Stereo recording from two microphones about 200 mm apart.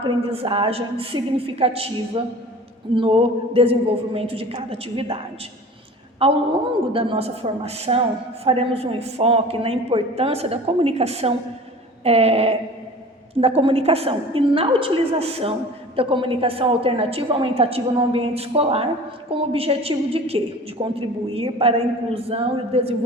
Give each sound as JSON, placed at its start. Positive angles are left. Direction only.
{"t": 0.0, "sound": "a woman's voice", "side_deg": -30}